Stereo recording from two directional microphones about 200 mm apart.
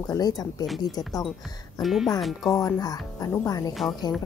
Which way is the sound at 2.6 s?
20° left (ahead or behind).